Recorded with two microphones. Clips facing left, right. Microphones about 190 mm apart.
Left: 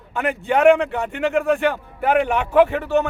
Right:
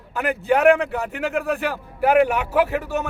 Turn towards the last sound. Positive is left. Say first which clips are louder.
# left 5 dB
turn(degrees=-5)  # may be behind; listen again after turning